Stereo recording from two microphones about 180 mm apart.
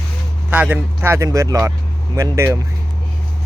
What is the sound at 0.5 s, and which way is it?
Speech, 10° right (ahead or behind).